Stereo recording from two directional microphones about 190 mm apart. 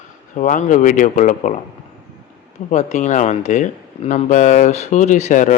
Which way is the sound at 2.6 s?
40° left (ahead or behind).